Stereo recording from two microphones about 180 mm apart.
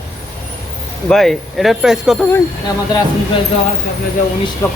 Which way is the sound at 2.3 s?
20° left (ahead or behind).